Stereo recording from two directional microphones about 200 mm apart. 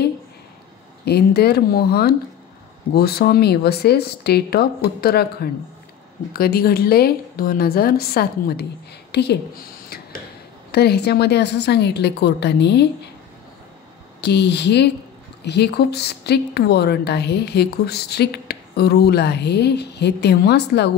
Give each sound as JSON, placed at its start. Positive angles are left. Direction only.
{"t": 1.0, "sound": "a woman's voice", "side_deg": 55}
{"t": 10.7, "sound": "a woman's voice", "side_deg": 55}
{"t": 14.2, "sound": "a woman's voice", "side_deg": 60}